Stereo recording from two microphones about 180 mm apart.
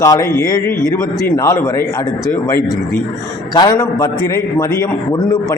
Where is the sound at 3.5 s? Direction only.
20° left (ahead or behind).